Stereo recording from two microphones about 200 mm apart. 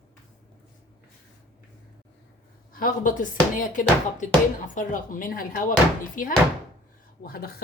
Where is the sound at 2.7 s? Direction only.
45° left (ahead or behind).